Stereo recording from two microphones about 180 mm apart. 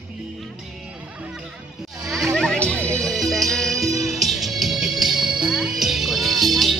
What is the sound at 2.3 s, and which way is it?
Music, 5° left (ahead or behind).